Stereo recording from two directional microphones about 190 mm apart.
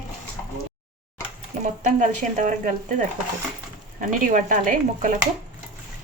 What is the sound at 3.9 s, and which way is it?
Speech, 45° right (ahead or behind).